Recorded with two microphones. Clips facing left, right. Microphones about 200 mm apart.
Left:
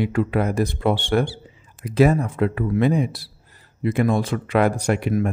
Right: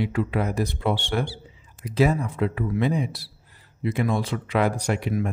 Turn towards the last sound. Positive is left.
turn(degrees=55)  # may be behind; listen again after turning